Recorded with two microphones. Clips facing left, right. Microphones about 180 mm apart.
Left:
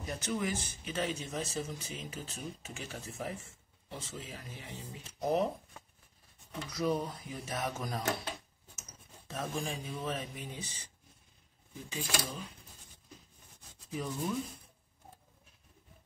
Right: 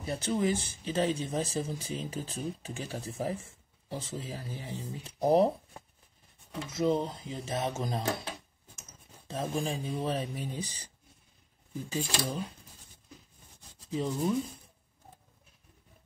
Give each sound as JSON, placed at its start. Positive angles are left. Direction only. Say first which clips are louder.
{"t": 0.0, "sound": "speech", "louder": "right 6 dB", "side_deg": -30}
{"t": 6.7, "sound": "speech", "louder": "right 4 dB", "side_deg": -25}
{"t": 9.3, "sound": "speech", "louder": "right 5 dB", "side_deg": -30}
{"t": 11.9, "sound": "speech", "louder": "right 4 dB", "side_deg": -35}
{"t": 13.8, "sound": "speech", "louder": "right 6 dB", "side_deg": -25}